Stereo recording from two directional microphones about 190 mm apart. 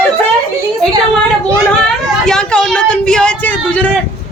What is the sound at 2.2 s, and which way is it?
A woman's voice, 5° left (ahead or behind).